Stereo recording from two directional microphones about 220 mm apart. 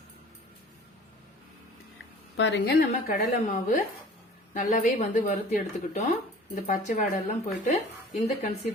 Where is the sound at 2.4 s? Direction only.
50° left (ahead or behind); by 7.1 s 35° left (ahead or behind).